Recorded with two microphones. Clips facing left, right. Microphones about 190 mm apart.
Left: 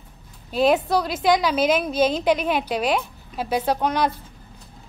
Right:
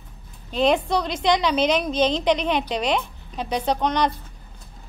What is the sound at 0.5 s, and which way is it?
A woman's voice, 5° left (ahead or behind).